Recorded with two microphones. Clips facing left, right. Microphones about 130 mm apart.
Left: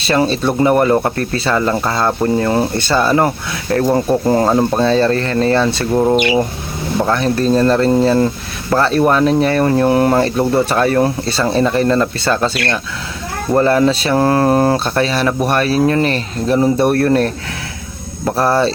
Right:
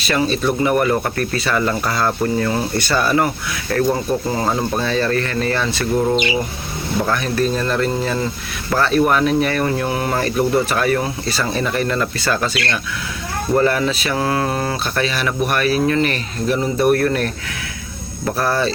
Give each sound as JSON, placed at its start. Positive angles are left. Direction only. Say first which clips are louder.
{"t": 0.0, "sound": "speech", "louder": "left 3 dB", "side_deg": 30}
{"t": 10.2, "sound": "speech", "louder": "left 4 dB", "side_deg": 30}